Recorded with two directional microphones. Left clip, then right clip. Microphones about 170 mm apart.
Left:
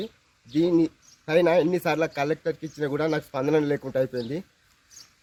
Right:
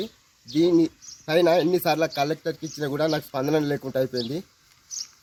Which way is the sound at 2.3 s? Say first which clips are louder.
Left 1 dB; 35° left (ahead or behind).